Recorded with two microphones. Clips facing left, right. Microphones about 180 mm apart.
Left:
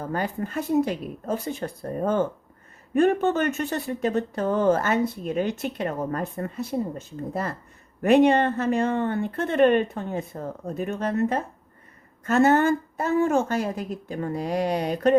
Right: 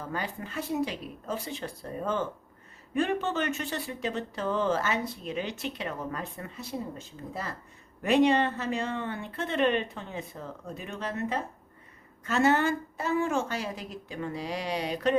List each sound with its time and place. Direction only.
0.0 s speech: 50° left (ahead or behind)
8.0 s speech: 55° left (ahead or behind)